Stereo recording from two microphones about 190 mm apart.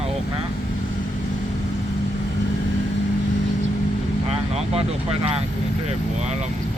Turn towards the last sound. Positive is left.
turn(degrees=-30)  # may be behind; listen again after turning